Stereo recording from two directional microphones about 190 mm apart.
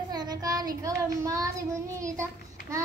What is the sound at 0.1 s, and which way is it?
Child singing, 20° right (ahead or behind).